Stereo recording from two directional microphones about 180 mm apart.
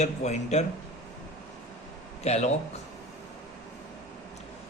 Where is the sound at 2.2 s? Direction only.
35° left (ahead or behind).